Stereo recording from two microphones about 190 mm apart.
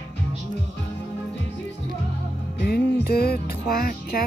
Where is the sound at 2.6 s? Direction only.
55° left (ahead or behind).